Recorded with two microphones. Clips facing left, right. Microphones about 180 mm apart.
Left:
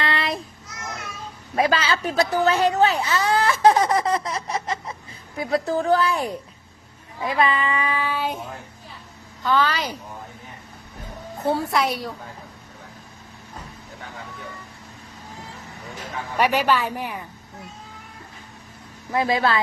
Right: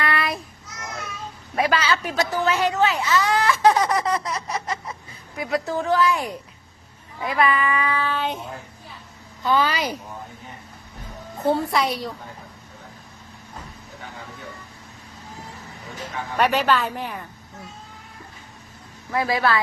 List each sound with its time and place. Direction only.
0.0 s child singing: 25° left (ahead or behind)
1.5 s child singing: 30° left (ahead or behind)
2.4 s speech: 30° left (ahead or behind)
7.2 s child singing: 25° left (ahead or behind); by 8.4 s 10° left (ahead or behind)
9.4 s speech: 15° right (ahead or behind)
11.3 s a woman's voice: centre (ahead or behind)
16.4 s a woman's voice: 10° left (ahead or behind)
19.1 s child singing: 25° left (ahead or behind)